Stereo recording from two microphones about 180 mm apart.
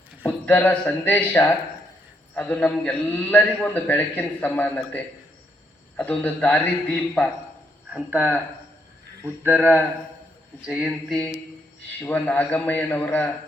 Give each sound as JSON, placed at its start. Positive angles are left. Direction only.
{"t": 0.3, "sound": "a man's voice", "side_deg": 10}
{"t": 6.0, "sound": "a man's voice", "side_deg": 5}
{"t": 7.9, "sound": "speech", "side_deg": -10}
{"t": 10.7, "sound": "a sound", "side_deg": -5}
{"t": 11.9, "sound": "a man's voice", "side_deg": 10}